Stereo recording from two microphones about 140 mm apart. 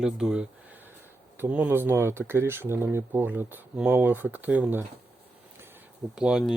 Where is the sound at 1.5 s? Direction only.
10° right (ahead or behind).